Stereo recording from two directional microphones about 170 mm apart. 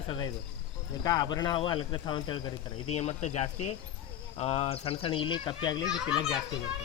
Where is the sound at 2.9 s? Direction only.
40° left (ahead or behind).